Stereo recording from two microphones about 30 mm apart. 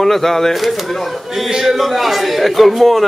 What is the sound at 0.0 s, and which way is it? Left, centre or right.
Speech, centre.